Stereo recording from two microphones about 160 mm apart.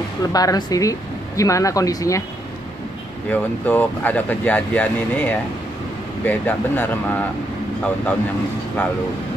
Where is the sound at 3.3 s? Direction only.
10° left (ahead or behind).